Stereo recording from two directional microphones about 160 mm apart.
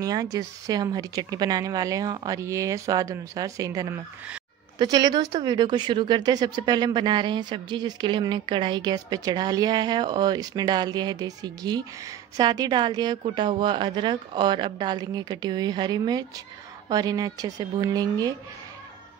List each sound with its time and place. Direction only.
0.0 s speech: 20° right (ahead or behind)